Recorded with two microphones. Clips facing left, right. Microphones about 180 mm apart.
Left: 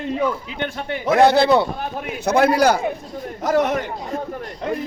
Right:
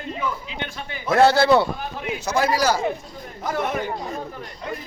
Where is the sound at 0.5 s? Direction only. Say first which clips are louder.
Left 7 dB; 50° left (ahead or behind).